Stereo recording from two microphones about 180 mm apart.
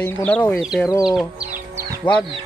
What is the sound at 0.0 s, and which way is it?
Speech, 10° left (ahead or behind).